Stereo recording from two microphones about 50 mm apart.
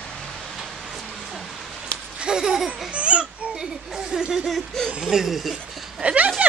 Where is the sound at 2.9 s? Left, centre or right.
Right.